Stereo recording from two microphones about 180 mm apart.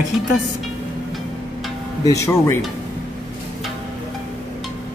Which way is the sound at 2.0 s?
20° left (ahead or behind).